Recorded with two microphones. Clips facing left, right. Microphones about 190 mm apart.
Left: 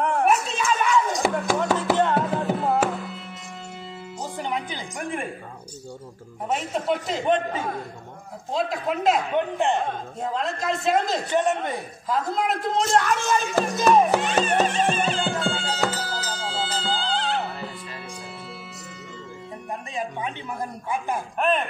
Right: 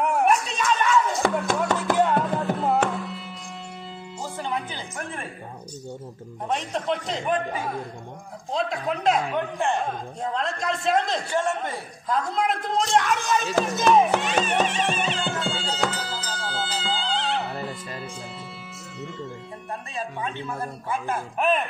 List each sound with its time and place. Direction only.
0.0 s a sound: 5° right (ahead or behind)
0.3 s chopping: 5° left (ahead or behind)
2.1 s music: 5° left (ahead or behind)
4.2 s music: 15° left (ahead or behind)
6.5 s a man's voice: 5° left (ahead or behind)
7.2 s a man's voice: 25° left (ahead or behind)
8.5 s a man's voice: centre (ahead or behind)
9.3 s a man's voice: 20° left (ahead or behind)
10.2 s a man's voice: centre (ahead or behind)
11.2 s a man's voice: 20° left (ahead or behind)
12.1 s a man's voice: centre (ahead or behind)
16.8 s music: centre (ahead or behind)
20.0 s speech: 15° left (ahead or behind)
21.4 s a man's voice: centre (ahead or behind)